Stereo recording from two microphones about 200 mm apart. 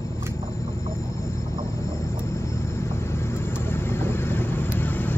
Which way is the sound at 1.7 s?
15° left (ahead or behind).